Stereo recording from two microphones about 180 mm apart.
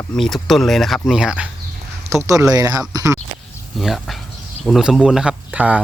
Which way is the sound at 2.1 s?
15° right (ahead or behind).